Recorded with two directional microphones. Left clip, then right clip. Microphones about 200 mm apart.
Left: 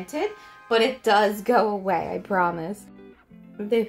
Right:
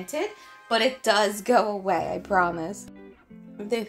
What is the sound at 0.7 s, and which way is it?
A woman's voice, 40° right (ahead or behind).